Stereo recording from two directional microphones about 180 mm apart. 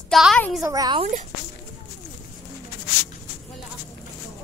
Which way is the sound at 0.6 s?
20° right (ahead or behind).